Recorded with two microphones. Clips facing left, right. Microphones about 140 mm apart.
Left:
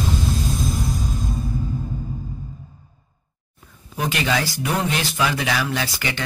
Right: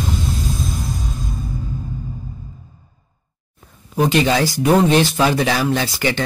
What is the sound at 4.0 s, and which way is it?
Speech, 30° right (ahead or behind).